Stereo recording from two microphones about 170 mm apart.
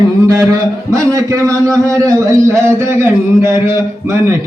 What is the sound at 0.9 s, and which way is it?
A man's voice, 20° right (ahead or behind).